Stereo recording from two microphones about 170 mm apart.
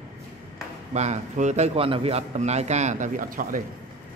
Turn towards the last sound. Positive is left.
turn(degrees=-55)  # may be behind; listen again after turning